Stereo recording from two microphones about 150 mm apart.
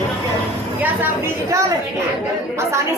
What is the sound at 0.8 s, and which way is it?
A woman's voice, 15° right (ahead or behind).